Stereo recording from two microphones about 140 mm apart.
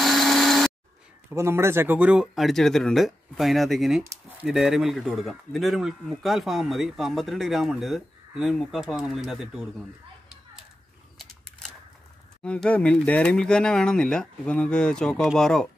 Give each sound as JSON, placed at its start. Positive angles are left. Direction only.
{"t": 0.0, "sound": "a sound", "side_deg": 0}
{"t": 1.3, "sound": "speech", "side_deg": -20}
{"t": 12.4, "sound": "speech", "side_deg": 10}